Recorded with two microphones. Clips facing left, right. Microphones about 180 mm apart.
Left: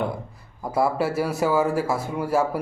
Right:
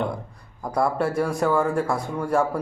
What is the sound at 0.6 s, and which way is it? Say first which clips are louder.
Speech: even; 5° left (ahead or behind).